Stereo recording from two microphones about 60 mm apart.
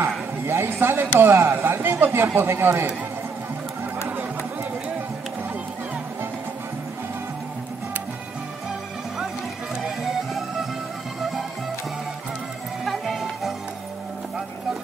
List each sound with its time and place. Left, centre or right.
0.5 s speech: right
12.8 s music: centre